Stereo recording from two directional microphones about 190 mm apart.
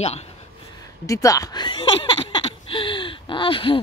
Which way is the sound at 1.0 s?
15° left (ahead or behind).